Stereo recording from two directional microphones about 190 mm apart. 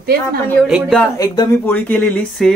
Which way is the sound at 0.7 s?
Centre (ahead or behind).